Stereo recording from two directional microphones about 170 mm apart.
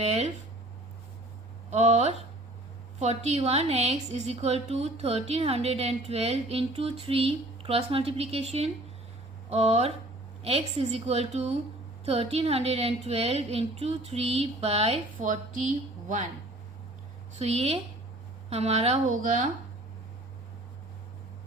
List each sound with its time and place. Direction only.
0.0 s a woman's voice: 40° right (ahead or behind)
1.7 s a woman's voice: 40° right (ahead or behind)
17.3 s a woman's voice: 40° right (ahead or behind)